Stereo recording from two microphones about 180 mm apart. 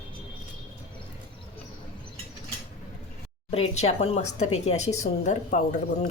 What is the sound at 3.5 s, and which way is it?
Speech, 35° left (ahead or behind).